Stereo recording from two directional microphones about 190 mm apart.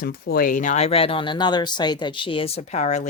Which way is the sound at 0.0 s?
55° left (ahead or behind).